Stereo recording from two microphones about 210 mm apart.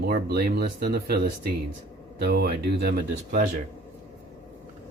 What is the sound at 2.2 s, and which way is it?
Speech, 50° right (ahead or behind).